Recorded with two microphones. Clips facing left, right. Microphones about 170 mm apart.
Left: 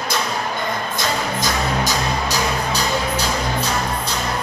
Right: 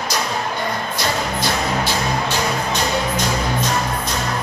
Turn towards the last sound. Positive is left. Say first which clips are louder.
# right 1 dB
turn(degrees=40)  # may be behind; listen again after turning